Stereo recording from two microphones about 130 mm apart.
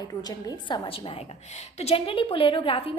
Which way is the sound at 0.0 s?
30° left (ahead or behind).